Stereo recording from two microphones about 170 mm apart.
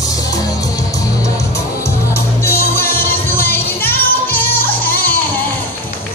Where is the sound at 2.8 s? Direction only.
15° left (ahead or behind).